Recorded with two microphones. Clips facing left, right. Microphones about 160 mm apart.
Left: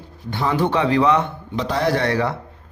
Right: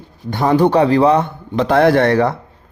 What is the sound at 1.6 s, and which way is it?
Speech, 55° right (ahead or behind).